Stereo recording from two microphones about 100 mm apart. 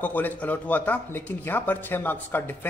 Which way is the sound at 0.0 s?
20° left (ahead or behind).